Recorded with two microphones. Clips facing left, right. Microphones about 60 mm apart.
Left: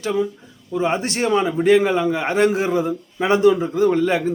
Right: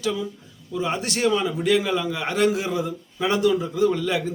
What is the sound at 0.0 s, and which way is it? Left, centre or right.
A man's voice, left.